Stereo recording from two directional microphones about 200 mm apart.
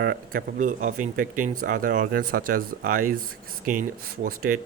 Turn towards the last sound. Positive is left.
turn(degrees=-45)  # may be behind; listen again after turning